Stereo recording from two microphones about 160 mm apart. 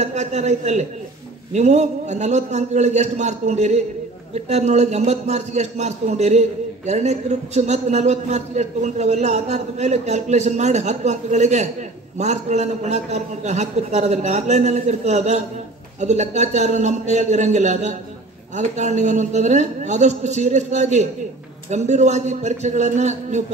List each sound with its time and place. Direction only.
0.0 s a man's voice: 45° right (ahead or behind)